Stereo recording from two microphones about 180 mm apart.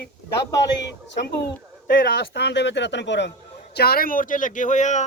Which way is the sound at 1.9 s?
55° left (ahead or behind).